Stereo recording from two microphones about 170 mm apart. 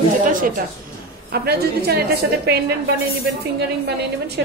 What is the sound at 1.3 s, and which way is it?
A woman's voice, 70° right (ahead or behind).